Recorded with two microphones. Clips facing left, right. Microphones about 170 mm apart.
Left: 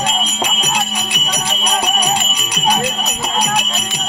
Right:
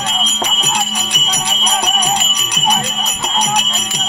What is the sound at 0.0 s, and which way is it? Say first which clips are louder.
Music: left 2 dB; 10° left (ahead or behind).